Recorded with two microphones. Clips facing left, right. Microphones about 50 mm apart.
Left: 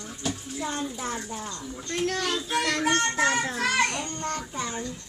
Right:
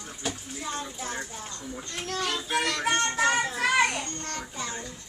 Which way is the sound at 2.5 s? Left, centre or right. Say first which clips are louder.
Left 1 dB; centre.